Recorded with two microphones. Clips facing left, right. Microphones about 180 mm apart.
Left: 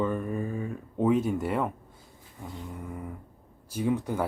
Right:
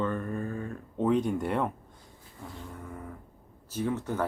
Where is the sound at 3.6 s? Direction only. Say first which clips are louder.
Left 3 dB; 10° left (ahead or behind).